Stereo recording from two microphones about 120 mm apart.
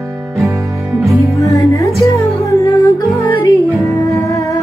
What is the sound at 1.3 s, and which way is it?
Music, 25° left (ahead or behind).